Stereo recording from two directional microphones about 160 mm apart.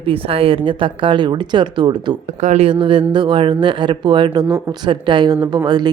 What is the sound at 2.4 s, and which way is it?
Speech, 45° right (ahead or behind).